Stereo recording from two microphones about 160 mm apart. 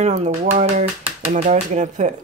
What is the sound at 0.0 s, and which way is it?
Speech, 45° right (ahead or behind).